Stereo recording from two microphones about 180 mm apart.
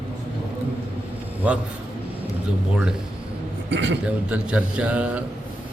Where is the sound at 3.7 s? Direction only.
90° right.